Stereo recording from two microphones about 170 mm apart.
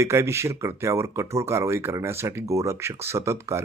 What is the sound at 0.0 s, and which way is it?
Speech, 15° right (ahead or behind).